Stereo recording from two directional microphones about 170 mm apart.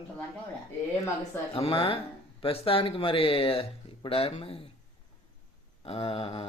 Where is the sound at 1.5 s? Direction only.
35° left (ahead or behind).